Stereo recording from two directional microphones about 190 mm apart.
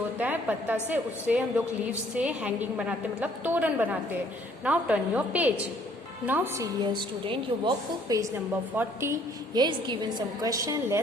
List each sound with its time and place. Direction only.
0.2 s a woman's voice: 10° right (ahead or behind)
6.8 s a woman's voice: 25° right (ahead or behind)
9.6 s a woman's voice: 25° right (ahead or behind)